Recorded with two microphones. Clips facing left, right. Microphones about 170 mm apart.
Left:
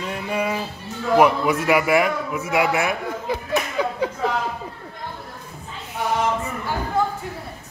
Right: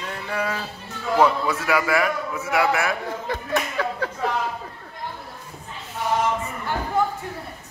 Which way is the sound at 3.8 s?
15° left (ahead or behind).